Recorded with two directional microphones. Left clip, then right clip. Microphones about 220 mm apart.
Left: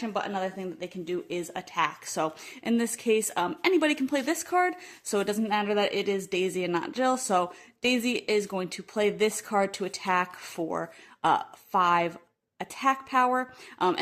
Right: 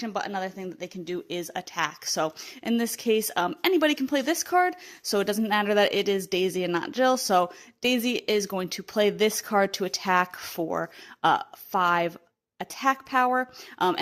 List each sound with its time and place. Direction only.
0.0 s speech: 50° right (ahead or behind); by 14.0 s 30° right (ahead or behind)